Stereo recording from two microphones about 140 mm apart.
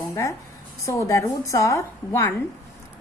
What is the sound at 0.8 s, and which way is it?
A woman's voice, 25° left (ahead or behind).